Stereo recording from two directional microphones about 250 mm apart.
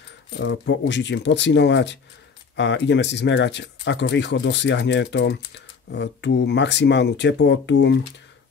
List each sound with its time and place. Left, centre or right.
0.4 s speech: left